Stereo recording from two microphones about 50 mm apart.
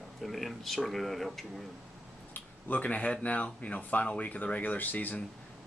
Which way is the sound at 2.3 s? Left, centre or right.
Left.